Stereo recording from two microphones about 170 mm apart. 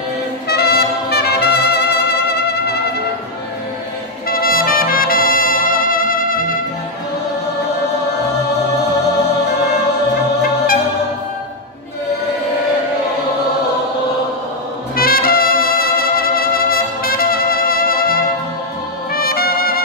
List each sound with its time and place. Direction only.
0.5 s brass instrument: 70° left (ahead or behind)
4.3 s trumpet: 60° left (ahead or behind)
15.0 s trumpet: 60° left (ahead or behind)